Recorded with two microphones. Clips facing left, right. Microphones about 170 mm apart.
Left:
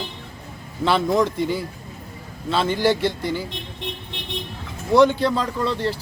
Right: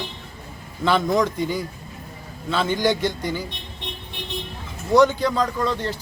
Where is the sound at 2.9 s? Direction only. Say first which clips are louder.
Left 2 dB; 30° left (ahead or behind).